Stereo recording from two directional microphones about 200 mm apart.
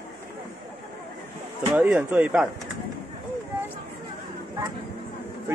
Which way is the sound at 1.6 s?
10° right (ahead or behind).